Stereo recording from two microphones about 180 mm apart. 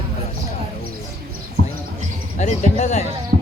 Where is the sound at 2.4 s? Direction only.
40° left (ahead or behind).